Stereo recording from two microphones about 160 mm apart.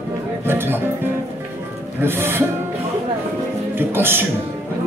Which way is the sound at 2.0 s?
15° right (ahead or behind).